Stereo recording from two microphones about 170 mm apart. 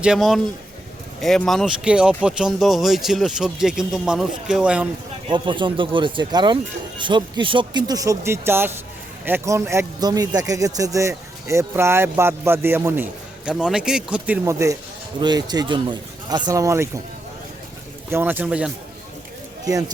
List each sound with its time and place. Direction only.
0.0 s speech: 5° right (ahead or behind)
5.3 s a man's voice: 30° right (ahead or behind); by 14.3 s 5° right (ahead or behind)
14.4 s a man's voice: 15° right (ahead or behind)
18.1 s a man's voice: 10° right (ahead or behind)
19.7 s speech: 20° right (ahead or behind)